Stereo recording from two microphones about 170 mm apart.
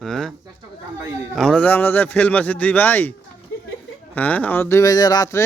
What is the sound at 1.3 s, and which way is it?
Speech, 5° left (ahead or behind).